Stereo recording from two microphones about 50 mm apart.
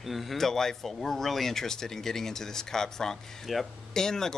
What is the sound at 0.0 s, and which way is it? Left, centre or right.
Speech, centre.